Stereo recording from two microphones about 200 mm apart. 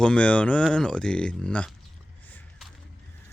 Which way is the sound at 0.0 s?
5° left (ahead or behind).